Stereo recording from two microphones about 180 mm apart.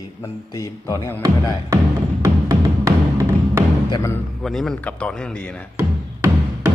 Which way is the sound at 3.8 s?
25° left (ahead or behind).